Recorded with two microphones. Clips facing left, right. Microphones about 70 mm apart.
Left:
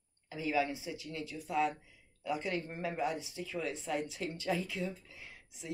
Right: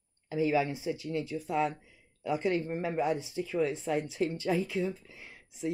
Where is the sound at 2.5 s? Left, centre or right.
Right.